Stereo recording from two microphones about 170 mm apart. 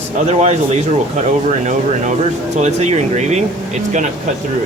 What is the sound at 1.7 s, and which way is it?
Speech, 45° right (ahead or behind).